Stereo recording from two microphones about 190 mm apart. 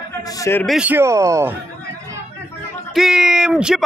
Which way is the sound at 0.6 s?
5° right (ahead or behind).